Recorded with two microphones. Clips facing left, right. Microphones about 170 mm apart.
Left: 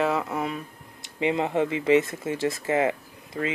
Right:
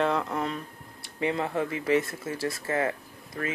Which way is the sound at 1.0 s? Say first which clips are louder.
Left 3 dB; 20° left (ahead or behind).